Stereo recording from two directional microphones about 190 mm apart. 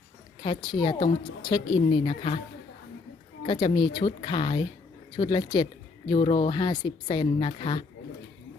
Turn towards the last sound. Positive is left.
turn(degrees=25)  # may be behind; listen again after turning